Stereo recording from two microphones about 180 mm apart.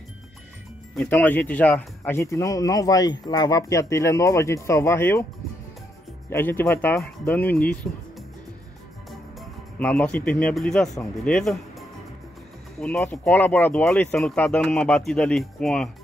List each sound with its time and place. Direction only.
0.9 s speech: 10° left (ahead or behind)
6.3 s speech: 10° left (ahead or behind)
9.4 s speech: 5° left (ahead or behind)
12.7 s speech: 5° left (ahead or behind)